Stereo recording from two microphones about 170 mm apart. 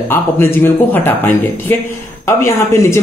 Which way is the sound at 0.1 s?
10° left (ahead or behind).